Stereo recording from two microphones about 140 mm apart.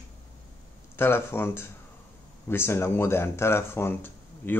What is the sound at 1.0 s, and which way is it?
Speech, 15° left (ahead or behind).